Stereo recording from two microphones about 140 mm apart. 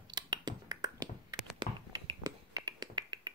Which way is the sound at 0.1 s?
30° right (ahead or behind).